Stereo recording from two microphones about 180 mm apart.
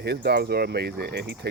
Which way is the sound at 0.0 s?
65° right (ahead or behind).